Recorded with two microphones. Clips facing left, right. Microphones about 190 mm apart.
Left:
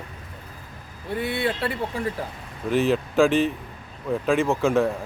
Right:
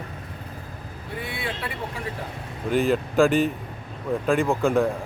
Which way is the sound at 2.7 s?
Centre (ahead or behind).